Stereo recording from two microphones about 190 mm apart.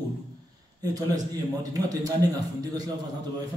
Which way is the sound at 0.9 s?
20° right (ahead or behind).